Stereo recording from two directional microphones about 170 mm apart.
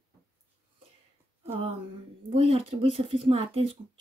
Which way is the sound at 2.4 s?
35° right (ahead or behind).